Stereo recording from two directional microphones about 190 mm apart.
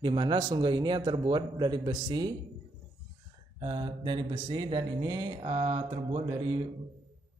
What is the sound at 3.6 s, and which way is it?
Speech, 25° right (ahead or behind).